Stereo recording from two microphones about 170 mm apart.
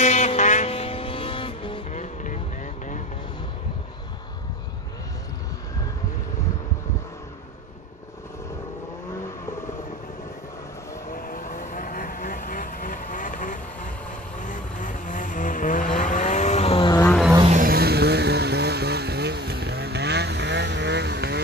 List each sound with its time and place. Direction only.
0.0 s vehicle: 45° left (ahead or behind)
1.9 s vehicle: 45° left (ahead or behind)
11.1 s vehicle: 55° left (ahead or behind); by 16.9 s 35° left (ahead or behind)
16.9 s vehicle: 15° left (ahead or behind)
17.5 s vehicle: 55° right (ahead or behind); by 21.4 s 80° right